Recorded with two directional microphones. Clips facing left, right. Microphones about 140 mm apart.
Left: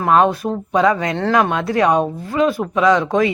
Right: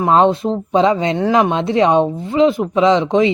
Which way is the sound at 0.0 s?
25° right (ahead or behind).